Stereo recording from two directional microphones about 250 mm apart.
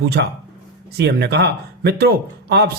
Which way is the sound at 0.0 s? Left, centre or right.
Right.